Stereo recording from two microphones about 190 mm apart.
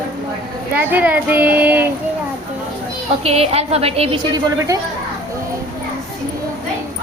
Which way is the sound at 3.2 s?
30° right (ahead or behind).